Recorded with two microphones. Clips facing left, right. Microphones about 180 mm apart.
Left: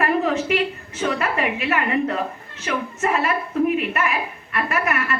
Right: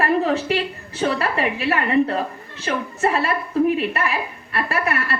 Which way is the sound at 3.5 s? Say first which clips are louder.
Right 2 dB; 35° right (ahead or behind).